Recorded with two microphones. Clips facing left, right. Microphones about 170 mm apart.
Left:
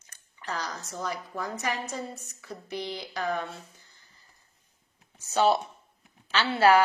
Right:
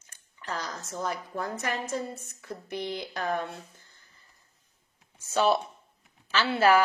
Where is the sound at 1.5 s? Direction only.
55° right (ahead or behind).